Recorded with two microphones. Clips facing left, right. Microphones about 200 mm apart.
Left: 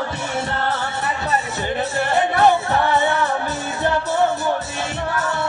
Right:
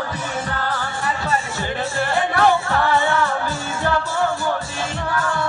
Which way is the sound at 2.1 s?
20° left (ahead or behind).